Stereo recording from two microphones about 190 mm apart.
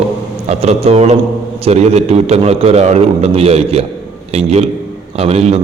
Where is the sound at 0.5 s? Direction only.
35° right (ahead or behind).